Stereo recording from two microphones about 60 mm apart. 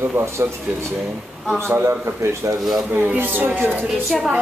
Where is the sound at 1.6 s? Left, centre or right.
Right.